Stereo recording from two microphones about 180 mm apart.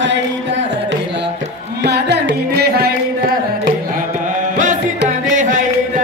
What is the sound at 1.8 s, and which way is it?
Carnatic music, 70° right (ahead or behind).